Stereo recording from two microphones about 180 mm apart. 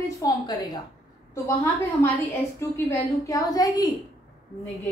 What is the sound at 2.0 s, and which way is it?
A woman's voice, 15° left (ahead or behind).